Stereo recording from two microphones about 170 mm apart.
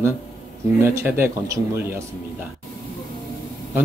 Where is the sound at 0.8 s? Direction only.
15° right (ahead or behind).